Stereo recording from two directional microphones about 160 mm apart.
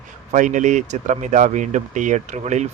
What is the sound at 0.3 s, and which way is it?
Speech, 50° right (ahead or behind).